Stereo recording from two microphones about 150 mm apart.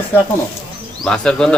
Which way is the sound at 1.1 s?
5° left (ahead or behind).